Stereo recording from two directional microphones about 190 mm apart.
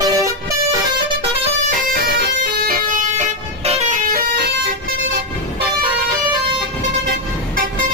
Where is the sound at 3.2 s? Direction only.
35° right (ahead or behind).